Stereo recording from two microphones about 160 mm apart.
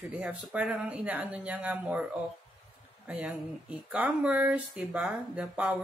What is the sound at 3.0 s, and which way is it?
Speech, 5° right (ahead or behind).